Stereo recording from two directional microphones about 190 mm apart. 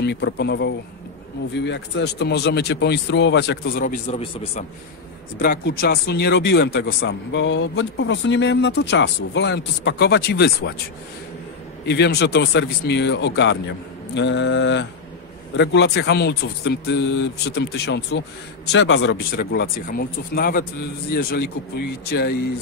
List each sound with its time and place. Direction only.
0.0 s mantra: 65° left (ahead or behind)
1.5 s speech: 70° left (ahead or behind); by 4.2 s 45° left (ahead or behind)
4.2 s a man's voice: 30° left (ahead or behind)
5.4 s speech: 55° left (ahead or behind)
11.8 s speech: 60° left (ahead or behind)
14.1 s mantra: 70° left (ahead or behind)
15.5 s speech: 65° left (ahead or behind)